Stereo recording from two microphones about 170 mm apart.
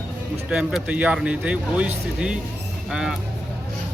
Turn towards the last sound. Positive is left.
turn(degrees=-5)  # may be behind; listen again after turning